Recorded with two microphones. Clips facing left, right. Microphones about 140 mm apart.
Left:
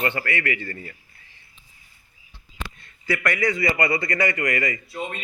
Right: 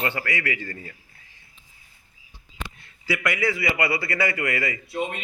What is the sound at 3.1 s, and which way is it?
A man's voice, 10° right (ahead or behind).